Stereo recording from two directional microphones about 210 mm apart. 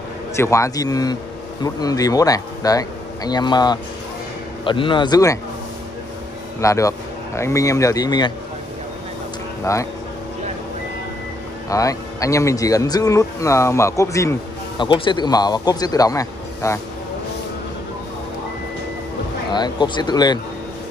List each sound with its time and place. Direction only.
0.4 s a man's voice: 15° left (ahead or behind)
6.6 s speech: 15° left (ahead or behind)
9.7 s speech: 15° left (ahead or behind)
11.7 s a man's voice: 15° left (ahead or behind)
19.5 s a man's voice: 20° left (ahead or behind)